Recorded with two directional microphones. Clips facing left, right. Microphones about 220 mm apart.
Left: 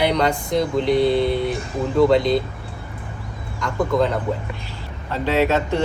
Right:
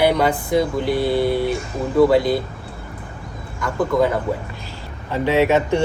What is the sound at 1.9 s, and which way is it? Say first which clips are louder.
Speech: right 2 dB; 5° right (ahead or behind).